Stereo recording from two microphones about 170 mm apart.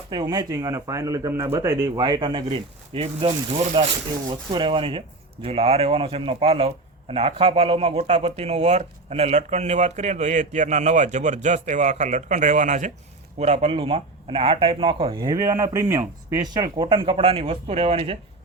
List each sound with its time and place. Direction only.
0.1 s speech: 25° right (ahead or behind)